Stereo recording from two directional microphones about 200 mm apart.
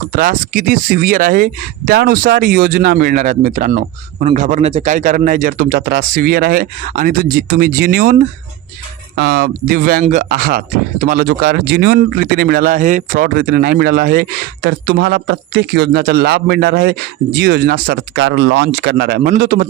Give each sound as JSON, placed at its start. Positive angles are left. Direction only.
{"t": 0.1, "sound": "speech", "side_deg": -45}
{"t": 9.1, "sound": "speech", "side_deg": -50}